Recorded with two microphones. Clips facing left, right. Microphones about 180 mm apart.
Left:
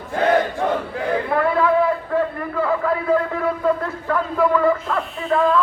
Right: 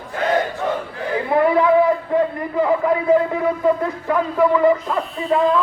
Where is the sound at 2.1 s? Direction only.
15° right (ahead or behind).